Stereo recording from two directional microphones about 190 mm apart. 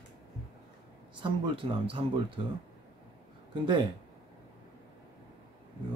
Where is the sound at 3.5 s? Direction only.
25° right (ahead or behind).